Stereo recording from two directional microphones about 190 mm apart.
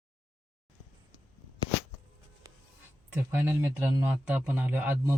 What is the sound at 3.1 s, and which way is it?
Speech, 10° right (ahead or behind).